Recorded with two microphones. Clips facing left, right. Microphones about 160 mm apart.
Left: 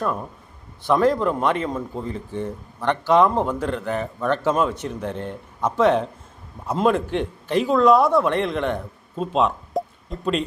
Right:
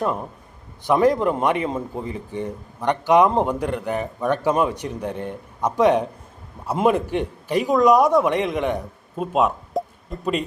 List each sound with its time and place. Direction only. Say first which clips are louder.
0.0 s a man's voice: right 1 dB; 20° right (ahead or behind)